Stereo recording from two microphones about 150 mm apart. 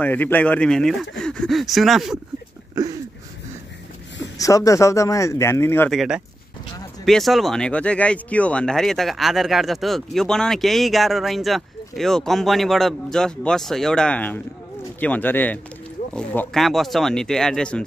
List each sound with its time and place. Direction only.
0.0 s speech: 10° left (ahead or behind)
2.7 s a sound: 25° right (ahead or behind)
4.4 s speech: 20° left (ahead or behind)
5.9 s speech: centre (ahead or behind)